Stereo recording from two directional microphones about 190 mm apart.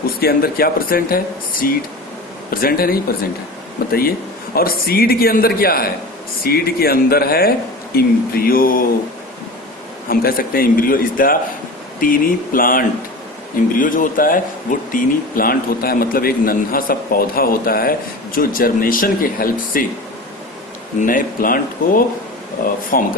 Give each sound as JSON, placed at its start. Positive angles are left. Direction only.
{"t": 0.2, "sound": "speech", "side_deg": 55}
{"t": 10.1, "sound": "speech", "side_deg": 50}
{"t": 21.0, "sound": "speech", "side_deg": 45}